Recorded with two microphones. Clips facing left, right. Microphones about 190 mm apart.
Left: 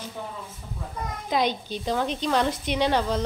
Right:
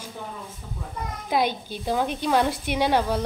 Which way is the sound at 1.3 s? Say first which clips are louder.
Right 1 dB; 10° right (ahead or behind).